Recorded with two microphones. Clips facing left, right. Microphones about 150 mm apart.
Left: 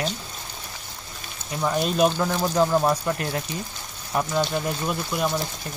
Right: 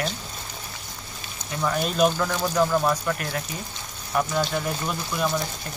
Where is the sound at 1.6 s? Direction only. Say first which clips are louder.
Left 1 dB; 20° left (ahead or behind).